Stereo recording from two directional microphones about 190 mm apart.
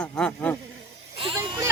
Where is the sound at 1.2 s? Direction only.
25° right (ahead or behind).